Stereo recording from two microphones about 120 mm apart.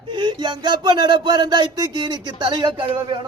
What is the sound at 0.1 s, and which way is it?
Speech, 40° right (ahead or behind).